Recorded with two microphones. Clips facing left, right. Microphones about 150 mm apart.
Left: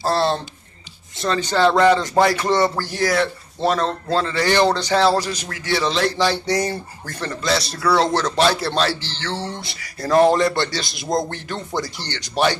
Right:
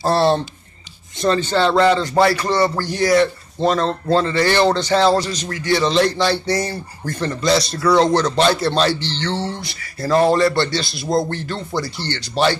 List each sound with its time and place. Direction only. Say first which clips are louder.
1.4 s a man's voice: left 2 dB; 10° left (ahead or behind)
2.7 s a man's voice: right 4 dB; centre (ahead or behind)
7.2 s a man's voice: right 4 dB; centre (ahead or behind)